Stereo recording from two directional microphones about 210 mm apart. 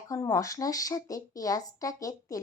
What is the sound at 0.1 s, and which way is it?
Speech, 15° left (ahead or behind).